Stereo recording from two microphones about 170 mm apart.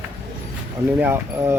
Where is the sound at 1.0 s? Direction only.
15° right (ahead or behind).